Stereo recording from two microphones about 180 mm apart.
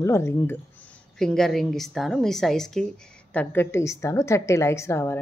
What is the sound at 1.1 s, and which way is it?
A woman's voice, 5° left (ahead or behind).